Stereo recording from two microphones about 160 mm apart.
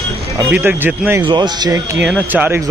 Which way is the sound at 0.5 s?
10° right (ahead or behind).